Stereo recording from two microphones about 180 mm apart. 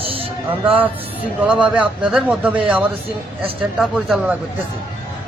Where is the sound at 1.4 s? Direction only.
5° right (ahead or behind).